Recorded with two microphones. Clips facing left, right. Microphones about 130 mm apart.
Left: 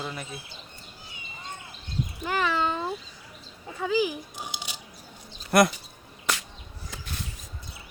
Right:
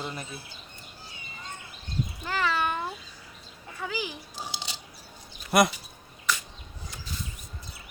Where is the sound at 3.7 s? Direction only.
20° left (ahead or behind).